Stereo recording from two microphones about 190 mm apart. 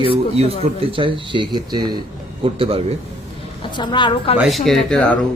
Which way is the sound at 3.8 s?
25° left (ahead or behind).